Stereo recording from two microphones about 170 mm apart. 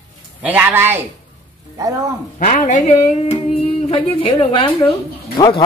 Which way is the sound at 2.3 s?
50° left (ahead or behind).